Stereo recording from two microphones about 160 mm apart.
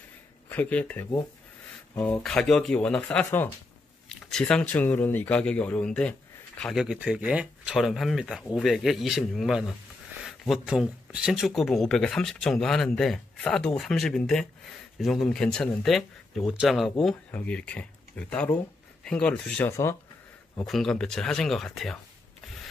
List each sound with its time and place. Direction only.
0.5 s speech: 10° left (ahead or behind)